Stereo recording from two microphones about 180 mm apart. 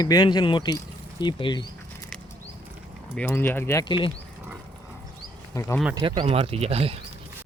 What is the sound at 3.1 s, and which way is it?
Speech, 10° left (ahead or behind).